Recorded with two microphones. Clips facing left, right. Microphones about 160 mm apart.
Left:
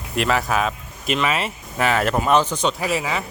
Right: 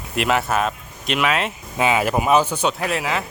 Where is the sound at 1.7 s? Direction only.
15° right (ahead or behind).